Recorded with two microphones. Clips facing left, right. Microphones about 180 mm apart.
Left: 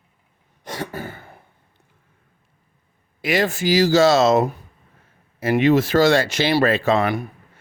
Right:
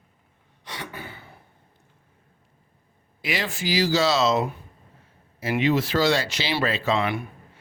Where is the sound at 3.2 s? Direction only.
45° left (ahead or behind).